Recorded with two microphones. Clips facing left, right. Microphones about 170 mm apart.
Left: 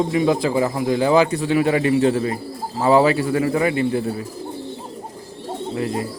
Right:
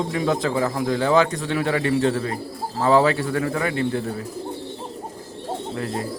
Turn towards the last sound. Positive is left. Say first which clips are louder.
# left 4 dB
turn(degrees=10)  # may be behind; listen again after turning